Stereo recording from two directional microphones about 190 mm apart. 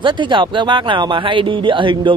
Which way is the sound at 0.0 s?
25° right (ahead or behind).